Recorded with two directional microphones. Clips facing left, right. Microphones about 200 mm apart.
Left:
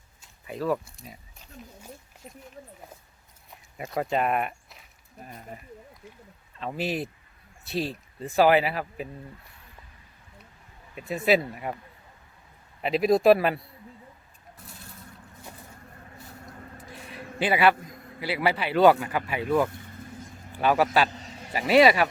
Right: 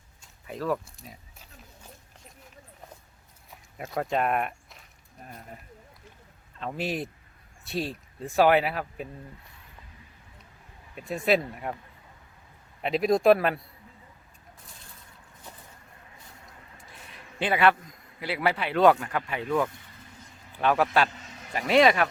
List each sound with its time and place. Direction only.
0.2 s speech: centre (ahead or behind)
3.8 s speech: centre (ahead or behind)
6.6 s speech: centre (ahead or behind)
10.9 s speech: centre (ahead or behind)
12.8 s speech: centre (ahead or behind)
17.4 s speech: 5° left (ahead or behind)
21.1 s a sound: 35° left (ahead or behind)
21.7 s speech: 5° left (ahead or behind)